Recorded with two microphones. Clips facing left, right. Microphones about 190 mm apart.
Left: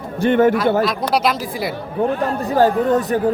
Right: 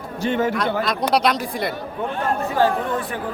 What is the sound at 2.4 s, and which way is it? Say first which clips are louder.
Speech: left 7 dB; 40° left (ahead or behind).